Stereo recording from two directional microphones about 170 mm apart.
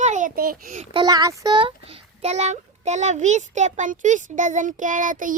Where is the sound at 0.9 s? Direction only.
25° right (ahead or behind).